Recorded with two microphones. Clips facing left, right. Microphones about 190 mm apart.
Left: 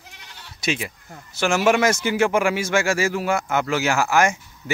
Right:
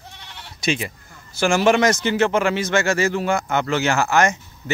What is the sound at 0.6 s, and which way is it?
A man's voice, 5° left (ahead or behind).